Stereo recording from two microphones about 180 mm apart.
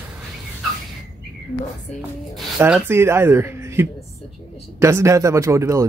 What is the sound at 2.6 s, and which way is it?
Speech, 10° right (ahead or behind).